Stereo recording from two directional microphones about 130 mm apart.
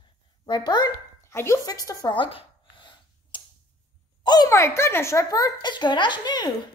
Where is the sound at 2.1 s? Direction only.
40° left (ahead or behind).